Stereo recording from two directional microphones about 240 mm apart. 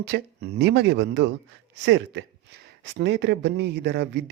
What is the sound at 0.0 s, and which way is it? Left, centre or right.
Speech, right.